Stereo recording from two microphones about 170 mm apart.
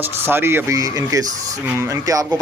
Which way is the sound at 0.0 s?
15° right (ahead or behind).